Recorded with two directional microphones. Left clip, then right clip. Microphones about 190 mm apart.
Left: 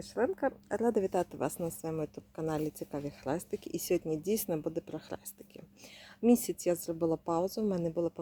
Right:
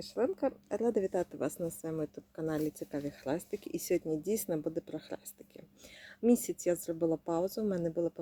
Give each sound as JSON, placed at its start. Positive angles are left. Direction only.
{"t": 0.1, "sound": "a woman's voice", "side_deg": 5}
{"t": 0.9, "sound": "a woman's voice", "side_deg": 25}
{"t": 1.2, "sound": "a woman's voice", "side_deg": 10}
{"t": 6.2, "sound": "a woman's voice", "side_deg": 10}